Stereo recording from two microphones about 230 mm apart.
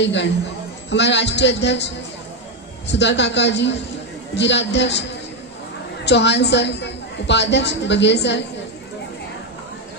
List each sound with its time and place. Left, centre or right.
0.0 s a man's voice: left
2.9 s a man's voice: left
6.0 s a man's voice: left